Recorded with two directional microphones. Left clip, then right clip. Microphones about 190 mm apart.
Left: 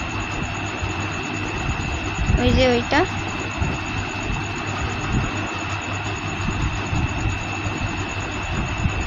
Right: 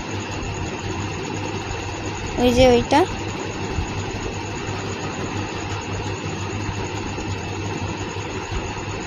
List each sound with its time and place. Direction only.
2.4 s a woman's voice: 35° right (ahead or behind)